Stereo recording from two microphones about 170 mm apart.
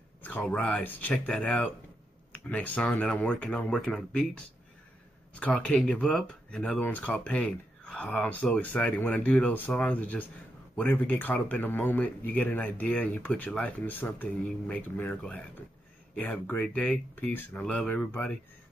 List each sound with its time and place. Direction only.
0.2 s speech: 10° left (ahead or behind)